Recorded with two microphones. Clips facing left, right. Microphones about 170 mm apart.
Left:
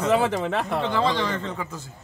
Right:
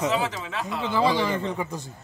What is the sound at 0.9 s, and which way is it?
Speech, 10° right (ahead or behind).